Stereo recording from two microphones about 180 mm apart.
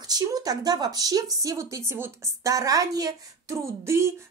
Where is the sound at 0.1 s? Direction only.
20° right (ahead or behind).